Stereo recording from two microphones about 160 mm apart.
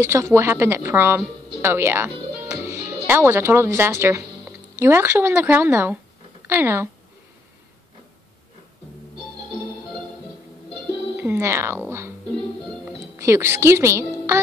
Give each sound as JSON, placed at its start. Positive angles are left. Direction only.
{"t": 0.0, "sound": "a woman's voice", "side_deg": -15}
{"t": 11.1, "sound": "speech", "side_deg": -15}
{"t": 12.8, "sound": "music", "side_deg": -15}